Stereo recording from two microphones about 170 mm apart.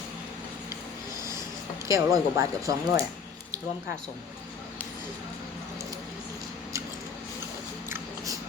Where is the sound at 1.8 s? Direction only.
20° right (ahead or behind).